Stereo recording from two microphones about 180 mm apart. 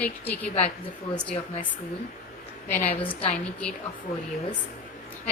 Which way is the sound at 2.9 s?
30° left (ahead or behind).